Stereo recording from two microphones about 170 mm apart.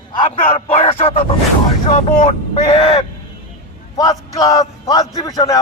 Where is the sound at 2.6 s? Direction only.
25° left (ahead or behind).